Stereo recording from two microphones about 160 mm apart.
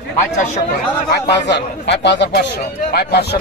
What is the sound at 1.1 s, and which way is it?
A man's voice, 90° left.